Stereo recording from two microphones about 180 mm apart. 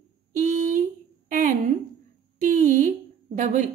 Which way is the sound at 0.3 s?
45° right (ahead or behind).